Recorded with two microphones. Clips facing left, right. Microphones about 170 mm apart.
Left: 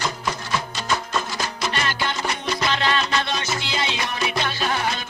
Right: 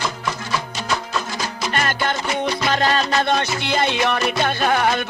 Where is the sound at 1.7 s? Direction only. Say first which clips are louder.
Right 4 dB; 50° right (ahead or behind).